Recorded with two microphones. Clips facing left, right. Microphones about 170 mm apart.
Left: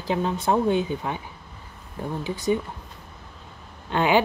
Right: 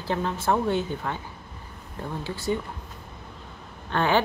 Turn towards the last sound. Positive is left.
turn(degrees=15)  # may be behind; listen again after turning